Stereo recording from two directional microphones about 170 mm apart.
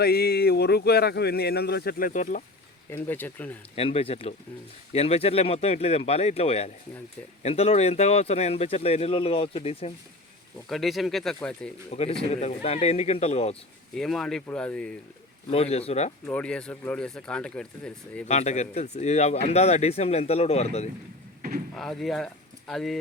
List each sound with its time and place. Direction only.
0.0 s speech: 65° left (ahead or behind)
2.9 s speech: 10° left (ahead or behind)
3.8 s speech: 35° left (ahead or behind)
10.7 s speech: centre (ahead or behind)
11.9 s speech: 40° left (ahead or behind)
13.9 s speech: centre (ahead or behind)
15.4 s speech: 35° left (ahead or behind)
16.2 s speech: 10° left (ahead or behind)
18.3 s speech: 40° left (ahead or behind)
21.8 s speech: centre (ahead or behind)